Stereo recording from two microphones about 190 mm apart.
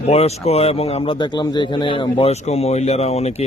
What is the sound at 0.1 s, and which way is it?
A man's voice, 35° left (ahead or behind).